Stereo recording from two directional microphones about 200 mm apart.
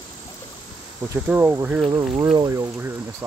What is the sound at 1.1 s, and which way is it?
Speech, 10° right (ahead or behind).